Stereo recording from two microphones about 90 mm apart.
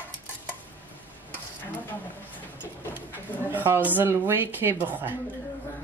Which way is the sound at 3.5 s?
20° right (ahead or behind).